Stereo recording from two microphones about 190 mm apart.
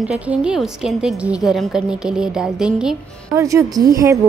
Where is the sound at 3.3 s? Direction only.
15° right (ahead or behind).